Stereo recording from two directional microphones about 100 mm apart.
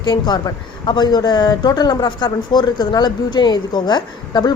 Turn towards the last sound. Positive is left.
turn(degrees=45)  # may be behind; listen again after turning